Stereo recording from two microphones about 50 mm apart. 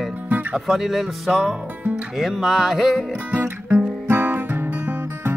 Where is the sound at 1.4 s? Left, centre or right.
Right.